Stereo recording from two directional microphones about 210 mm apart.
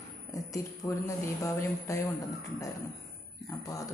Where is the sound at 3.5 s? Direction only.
15° left (ahead or behind).